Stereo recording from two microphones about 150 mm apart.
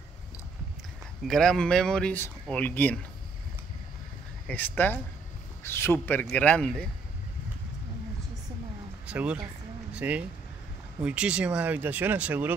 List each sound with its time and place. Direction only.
1.2 s speech: 5° left (ahead or behind)
4.5 s speech: 10° left (ahead or behind)
9.0 s speech: 10° right (ahead or behind)